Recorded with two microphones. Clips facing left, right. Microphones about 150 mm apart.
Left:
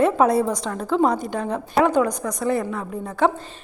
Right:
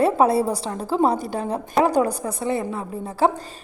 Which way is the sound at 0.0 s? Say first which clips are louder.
Even; 30° right (ahead or behind).